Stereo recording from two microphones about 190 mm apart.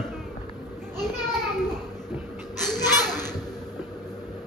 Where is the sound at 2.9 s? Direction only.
20° left (ahead or behind).